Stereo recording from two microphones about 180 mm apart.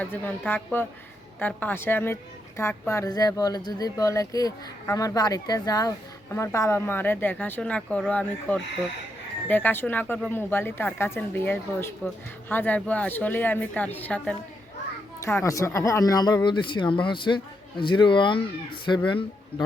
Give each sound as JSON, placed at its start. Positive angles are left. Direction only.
{"t": 0.0, "sound": "a woman's voice", "side_deg": 10}